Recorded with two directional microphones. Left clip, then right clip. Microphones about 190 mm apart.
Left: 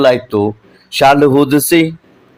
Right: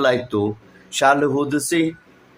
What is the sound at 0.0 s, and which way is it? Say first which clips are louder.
A man's voice: left 8 dB; 25° left (ahead or behind).